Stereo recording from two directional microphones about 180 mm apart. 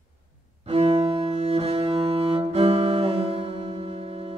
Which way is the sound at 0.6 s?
35° right (ahead or behind).